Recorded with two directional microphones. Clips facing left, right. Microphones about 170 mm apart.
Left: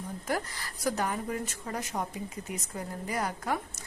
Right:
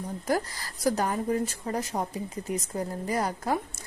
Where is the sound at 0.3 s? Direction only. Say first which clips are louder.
Right 5 dB; 35° right (ahead or behind).